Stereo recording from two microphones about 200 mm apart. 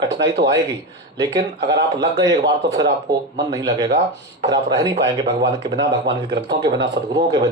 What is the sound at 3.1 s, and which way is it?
Speech, 20° right (ahead or behind).